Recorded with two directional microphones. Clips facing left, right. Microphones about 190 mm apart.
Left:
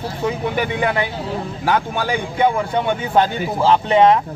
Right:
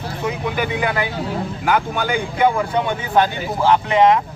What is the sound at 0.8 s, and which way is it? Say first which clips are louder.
A man's voice: left 1 dB; 30° left (ahead or behind).